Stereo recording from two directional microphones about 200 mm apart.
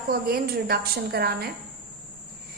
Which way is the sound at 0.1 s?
50° right (ahead or behind).